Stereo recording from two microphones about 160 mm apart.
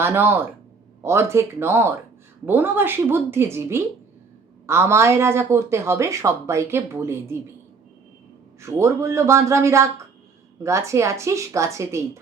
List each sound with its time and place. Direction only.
0.0 s speech: 15° right (ahead or behind)
8.6 s speech: 15° right (ahead or behind)